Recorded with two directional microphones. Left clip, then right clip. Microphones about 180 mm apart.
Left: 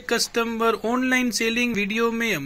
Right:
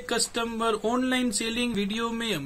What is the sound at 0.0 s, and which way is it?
Speech, 20° left (ahead or behind).